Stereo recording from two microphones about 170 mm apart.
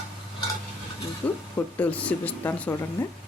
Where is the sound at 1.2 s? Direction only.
5° left (ahead or behind).